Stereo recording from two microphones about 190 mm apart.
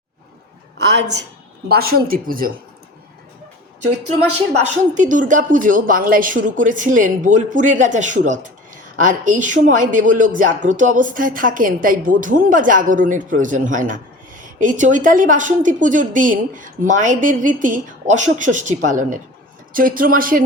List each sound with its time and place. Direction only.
0.9 s a woman's voice: 65° right (ahead or behind)
1.6 s speech: 55° right (ahead or behind)
4.6 s speech: 40° right (ahead or behind)